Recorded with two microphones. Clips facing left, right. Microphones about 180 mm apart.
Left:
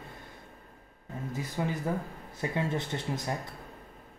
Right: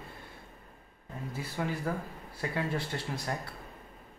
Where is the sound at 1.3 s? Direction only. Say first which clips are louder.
Left 2 dB; 20° left (ahead or behind).